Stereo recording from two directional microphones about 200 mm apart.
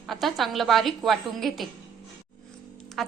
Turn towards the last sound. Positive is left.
turn(degrees=0)  # may be behind; listen again after turning